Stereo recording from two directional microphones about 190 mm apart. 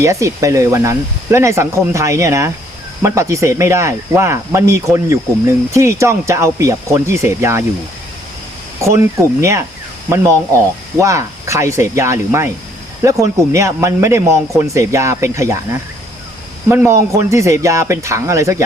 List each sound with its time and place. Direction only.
0.0 s speech: 15° right (ahead or behind)
8.8 s speech: 15° right (ahead or behind)
10.9 s speech: 15° right (ahead or behind)